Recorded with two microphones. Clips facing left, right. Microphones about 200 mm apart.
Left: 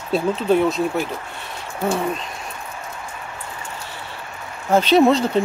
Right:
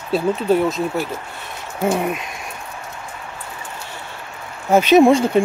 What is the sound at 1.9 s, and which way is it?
Speech, 15° right (ahead or behind).